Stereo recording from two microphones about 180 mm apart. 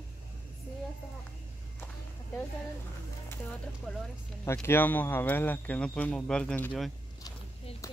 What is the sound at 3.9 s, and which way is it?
Speech, centre (ahead or behind).